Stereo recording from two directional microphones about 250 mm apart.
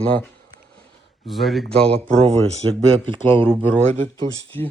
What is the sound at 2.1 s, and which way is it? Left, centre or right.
Speech, right.